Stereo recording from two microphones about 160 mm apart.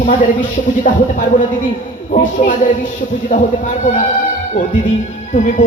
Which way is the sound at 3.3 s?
50° left (ahead or behind).